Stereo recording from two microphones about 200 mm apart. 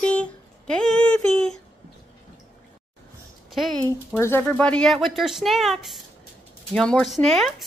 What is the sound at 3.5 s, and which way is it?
Speech, centre (ahead or behind).